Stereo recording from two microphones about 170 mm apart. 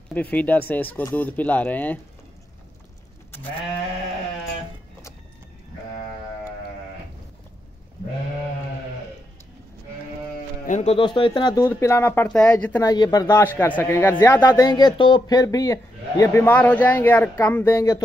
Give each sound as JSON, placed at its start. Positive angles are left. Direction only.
{"t": 0.1, "sound": "speech", "side_deg": 10}
{"t": 3.3, "sound": "sheep", "side_deg": 10}
{"t": 10.7, "sound": "speech", "side_deg": 40}
{"t": 11.5, "sound": "speech", "side_deg": 15}
{"t": 12.8, "sound": "speech", "side_deg": 25}